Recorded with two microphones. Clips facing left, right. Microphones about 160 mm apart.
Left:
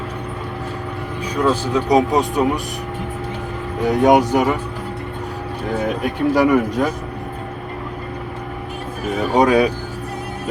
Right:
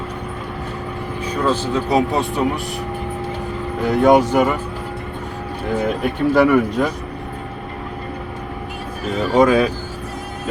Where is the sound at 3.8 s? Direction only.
15° left (ahead or behind).